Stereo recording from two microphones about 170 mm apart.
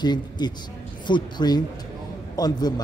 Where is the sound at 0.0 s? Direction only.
25° left (ahead or behind).